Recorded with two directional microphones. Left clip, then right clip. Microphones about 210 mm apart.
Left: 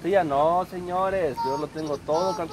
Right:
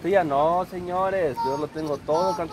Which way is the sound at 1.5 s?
25° right (ahead or behind).